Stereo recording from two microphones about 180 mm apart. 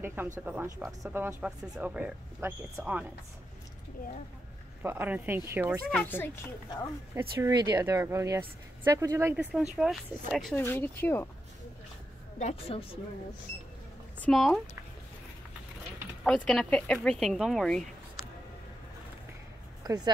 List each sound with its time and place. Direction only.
0.0 s speech: 10° right (ahead or behind)
4.8 s speech: 10° right (ahead or behind)
5.9 s a child's voice: 10° left (ahead or behind)
7.2 s speech: 15° right (ahead or behind); by 10.5 s centre (ahead or behind)
10.5 s a child's voice: 10° left (ahead or behind)
12.4 s a woman's voice: 35° left (ahead or behind)
14.2 s speech: 5° left (ahead or behind)
16.4 s speech: 5° left (ahead or behind)
19.8 s speech: 20° right (ahead or behind)